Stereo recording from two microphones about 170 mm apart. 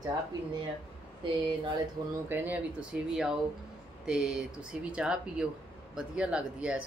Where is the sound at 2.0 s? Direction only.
25° right (ahead or behind).